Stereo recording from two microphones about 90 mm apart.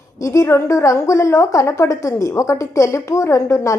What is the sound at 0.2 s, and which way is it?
A woman's voice, 35° left (ahead or behind).